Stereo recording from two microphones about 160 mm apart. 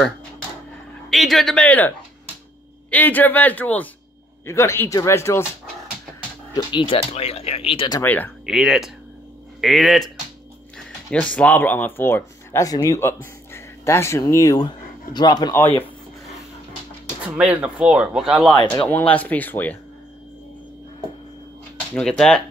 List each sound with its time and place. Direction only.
1.1 s a man's voice: centre (ahead or behind); by 5.4 s 15° left (ahead or behind)
6.5 s speech: 30° left (ahead or behind)
8.0 s a man's voice: 10° left (ahead or behind)
8.5 s speech: 5° right (ahead or behind); by 15.5 s 25° left (ahead or behind)
17.2 s speech: 10° right (ahead or behind)
18.9 s a man's voice: 10° left (ahead or behind)
21.9 s speech: 5° left (ahead or behind)